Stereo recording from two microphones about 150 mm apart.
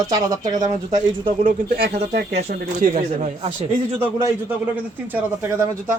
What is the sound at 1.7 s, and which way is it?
Speech, 90° right.